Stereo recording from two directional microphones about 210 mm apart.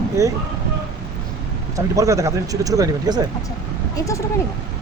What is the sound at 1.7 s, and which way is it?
Speech, 15° right (ahead or behind).